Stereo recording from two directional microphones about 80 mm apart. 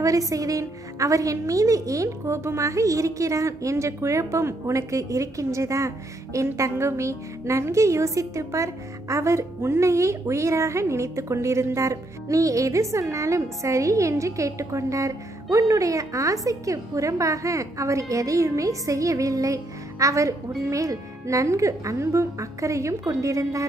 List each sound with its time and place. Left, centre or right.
0.0 s a woman's voice: right